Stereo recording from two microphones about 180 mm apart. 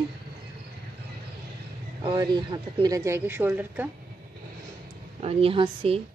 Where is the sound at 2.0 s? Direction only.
20° right (ahead or behind).